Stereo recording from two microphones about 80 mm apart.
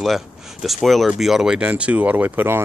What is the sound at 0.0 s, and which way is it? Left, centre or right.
Speech, centre.